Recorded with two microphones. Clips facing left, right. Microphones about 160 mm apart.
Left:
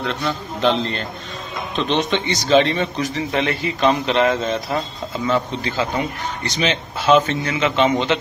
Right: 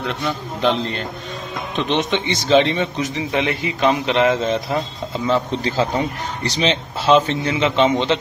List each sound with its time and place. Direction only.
0.0 s a man's voice: 10° right (ahead or behind)
5.6 s a man's voice: 35° right (ahead or behind)